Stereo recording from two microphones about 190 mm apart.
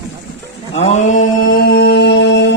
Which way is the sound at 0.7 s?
35° left (ahead or behind).